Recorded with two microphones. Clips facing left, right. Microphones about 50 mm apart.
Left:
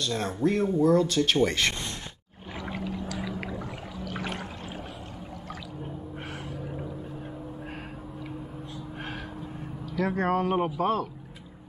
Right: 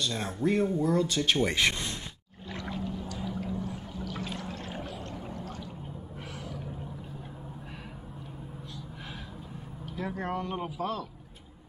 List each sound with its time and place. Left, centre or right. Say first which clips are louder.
0.0 s speech: left 3 dB; centre
2.8 s boat: left 3 dB; left
4.2 s a sound: left 5 dB; left
9.8 s speech: left 8 dB; left
10.6 s speech: left 7 dB; left